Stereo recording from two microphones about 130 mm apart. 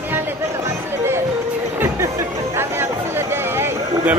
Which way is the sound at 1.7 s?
20° right (ahead or behind).